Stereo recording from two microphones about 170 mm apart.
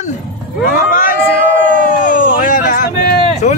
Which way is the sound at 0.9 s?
50° left (ahead or behind).